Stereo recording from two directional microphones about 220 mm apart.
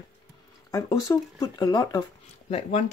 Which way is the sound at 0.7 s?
15° left (ahead or behind).